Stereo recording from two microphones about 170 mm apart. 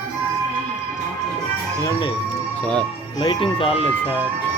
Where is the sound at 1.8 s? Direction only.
30° left (ahead or behind).